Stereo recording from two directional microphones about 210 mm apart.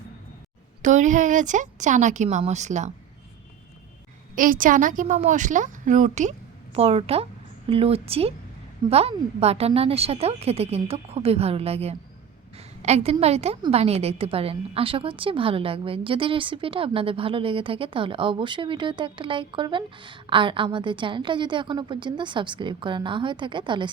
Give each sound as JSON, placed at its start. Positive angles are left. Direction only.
{"t": 0.8, "sound": "a woman's voice", "side_deg": -35}
{"t": 4.4, "sound": "a woman's voice", "side_deg": -40}